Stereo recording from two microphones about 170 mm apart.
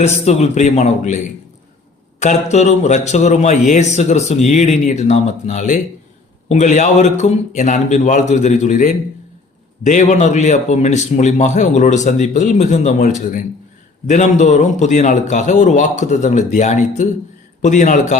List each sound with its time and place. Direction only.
0.0 s a man's voice: 40° left (ahead or behind)